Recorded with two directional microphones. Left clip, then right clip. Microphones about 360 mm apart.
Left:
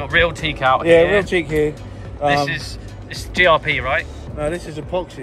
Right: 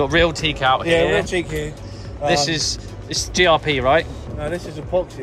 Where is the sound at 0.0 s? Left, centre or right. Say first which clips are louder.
Even; centre.